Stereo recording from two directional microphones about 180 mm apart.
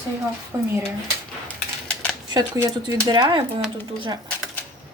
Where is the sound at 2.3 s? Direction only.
25° right (ahead or behind).